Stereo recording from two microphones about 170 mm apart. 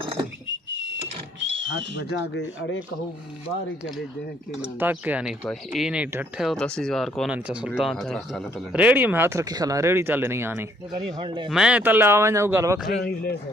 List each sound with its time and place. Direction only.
1.4 s wild animals: 90° right
2.0 s speech: 90° left
4.7 s speech: 10° right (ahead or behind)
11.1 s speech: 30° right (ahead or behind)
11.4 s speech: 5° right (ahead or behind)
12.8 s speech: 65° left (ahead or behind)